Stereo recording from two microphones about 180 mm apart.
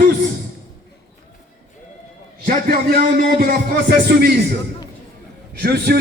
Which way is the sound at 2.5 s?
55° right (ahead or behind).